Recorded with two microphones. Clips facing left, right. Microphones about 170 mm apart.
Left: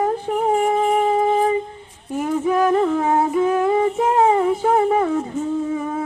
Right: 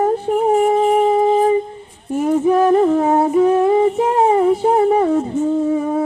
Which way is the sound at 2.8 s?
35° right (ahead or behind).